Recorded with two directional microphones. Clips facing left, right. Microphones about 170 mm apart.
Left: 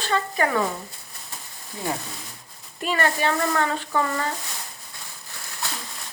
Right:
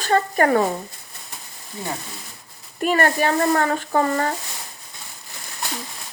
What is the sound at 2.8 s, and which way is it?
Speech, 50° right (ahead or behind).